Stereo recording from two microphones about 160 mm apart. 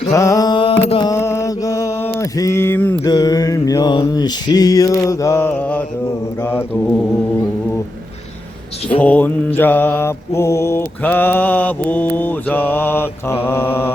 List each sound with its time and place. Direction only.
0.1 s music: 20° left (ahead or behind); by 1.0 s 35° left (ahead or behind)
1.0 s mantra: 15° left (ahead or behind)
3.0 s mantra: 25° left (ahead or behind)
8.9 s mantra: 10° left (ahead or behind)